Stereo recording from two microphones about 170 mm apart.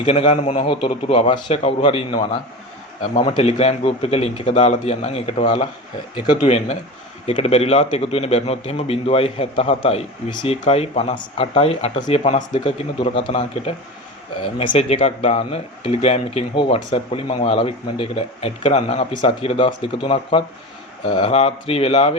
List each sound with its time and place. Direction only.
0.0 s a man's voice: 35° left (ahead or behind)
7.3 s speech: 35° left (ahead or behind)